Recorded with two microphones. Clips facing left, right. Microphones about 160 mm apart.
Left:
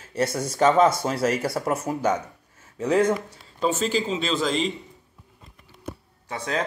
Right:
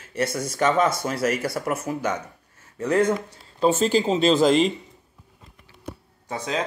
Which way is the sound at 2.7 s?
10° left (ahead or behind).